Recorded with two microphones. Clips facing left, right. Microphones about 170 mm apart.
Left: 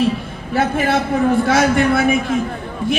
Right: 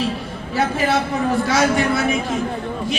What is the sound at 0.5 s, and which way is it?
A man's voice, 55° left (ahead or behind).